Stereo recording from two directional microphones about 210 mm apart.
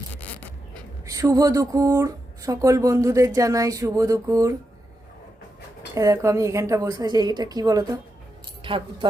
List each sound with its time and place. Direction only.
0.2 s a sound: 5° left (ahead or behind)
1.0 s speech: 15° right (ahead or behind)
5.9 s speech: 15° right (ahead or behind)